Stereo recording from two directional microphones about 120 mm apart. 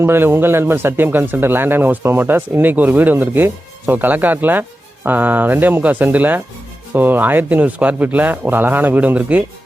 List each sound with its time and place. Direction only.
0.0 s speech: 20° right (ahead or behind)